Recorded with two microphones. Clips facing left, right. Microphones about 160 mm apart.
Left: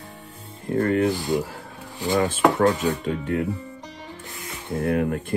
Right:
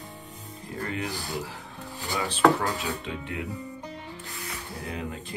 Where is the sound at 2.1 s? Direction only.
45° left (ahead or behind).